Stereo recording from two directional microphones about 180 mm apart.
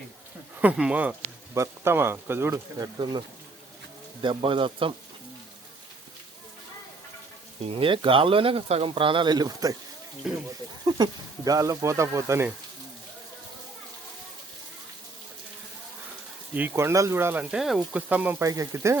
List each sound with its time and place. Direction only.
0.6 s speech: 5° right (ahead or behind); by 4.9 s 30° right (ahead or behind)
7.6 s speech: 30° right (ahead or behind)
10.3 s speech: 5° right (ahead or behind)
10.8 s speech: 20° right (ahead or behind)
16.6 s speech: 15° right (ahead or behind)